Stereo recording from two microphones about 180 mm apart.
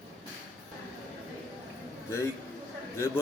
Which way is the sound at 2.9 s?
15° left (ahead or behind).